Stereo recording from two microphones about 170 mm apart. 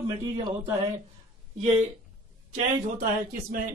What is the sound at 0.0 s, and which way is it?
Speech, 20° right (ahead or behind).